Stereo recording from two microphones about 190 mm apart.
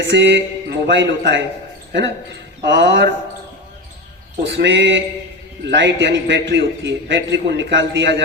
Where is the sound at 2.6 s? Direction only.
65° right (ahead or behind).